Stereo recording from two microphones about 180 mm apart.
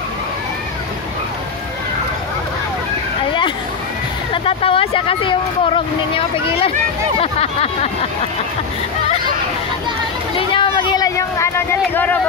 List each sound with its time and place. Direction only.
4.3 s speech: 30° left (ahead or behind)
10.3 s speech: 30° left (ahead or behind); by 12.2 s 10° left (ahead or behind)